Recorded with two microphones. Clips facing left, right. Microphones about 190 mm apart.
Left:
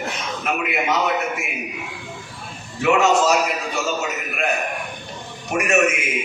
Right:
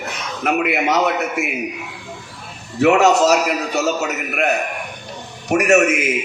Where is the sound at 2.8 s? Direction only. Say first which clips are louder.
Right 4 dB; 70° right (ahead or behind).